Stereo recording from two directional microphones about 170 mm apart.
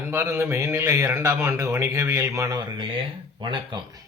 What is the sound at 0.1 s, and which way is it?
Speech, 15° right (ahead or behind).